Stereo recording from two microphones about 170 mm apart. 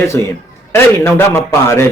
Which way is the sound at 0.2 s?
15° left (ahead or behind).